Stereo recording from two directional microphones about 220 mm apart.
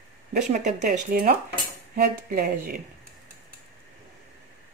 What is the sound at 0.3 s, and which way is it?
Speech, 35° right (ahead or behind).